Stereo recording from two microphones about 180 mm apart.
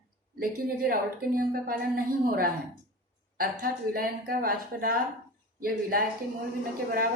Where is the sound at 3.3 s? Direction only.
50° right (ahead or behind).